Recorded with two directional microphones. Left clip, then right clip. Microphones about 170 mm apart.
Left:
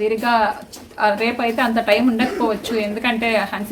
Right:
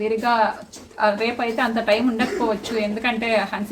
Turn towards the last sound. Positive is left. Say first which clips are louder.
# left 2 dB
turn(degrees=15)  # may be behind; listen again after turning